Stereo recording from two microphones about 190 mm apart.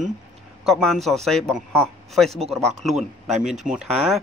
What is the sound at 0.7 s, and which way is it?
Speech, centre (ahead or behind).